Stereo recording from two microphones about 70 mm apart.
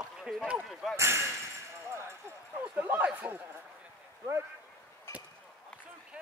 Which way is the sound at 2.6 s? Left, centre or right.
Right.